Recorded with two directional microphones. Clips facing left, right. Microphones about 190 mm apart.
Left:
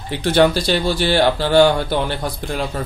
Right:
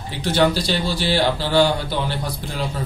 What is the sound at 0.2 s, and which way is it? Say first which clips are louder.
Speech: left 3 dB; 55° left (ahead or behind).